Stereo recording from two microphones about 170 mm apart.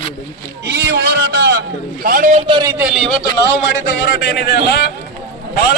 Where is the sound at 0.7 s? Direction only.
75° right (ahead or behind).